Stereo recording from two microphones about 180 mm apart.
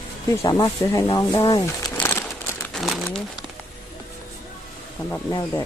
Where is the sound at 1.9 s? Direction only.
15° left (ahead or behind).